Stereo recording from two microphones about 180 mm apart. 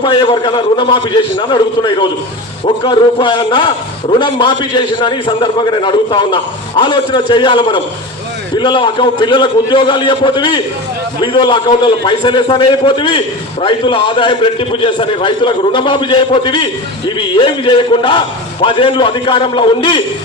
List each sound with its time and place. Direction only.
0.0 s a man's voice: 25° left (ahead or behind)